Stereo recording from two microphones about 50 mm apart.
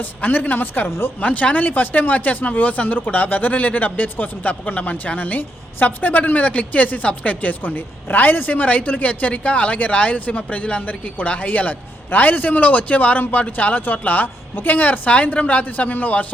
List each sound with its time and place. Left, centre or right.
0.0 s a woman's voice: left
0.9 s speech: left
1.2 s a woman's voice: left